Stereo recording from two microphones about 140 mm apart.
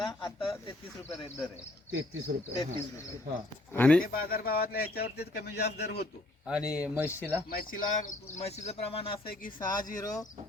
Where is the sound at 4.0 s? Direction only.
90° left.